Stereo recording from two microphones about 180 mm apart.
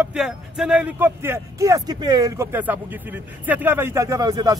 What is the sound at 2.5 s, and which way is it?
Speech, 10° right (ahead or behind).